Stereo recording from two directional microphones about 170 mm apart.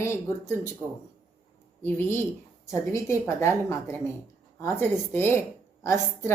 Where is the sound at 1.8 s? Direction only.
15° left (ahead or behind).